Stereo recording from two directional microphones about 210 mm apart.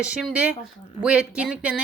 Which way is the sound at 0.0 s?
5° right (ahead or behind).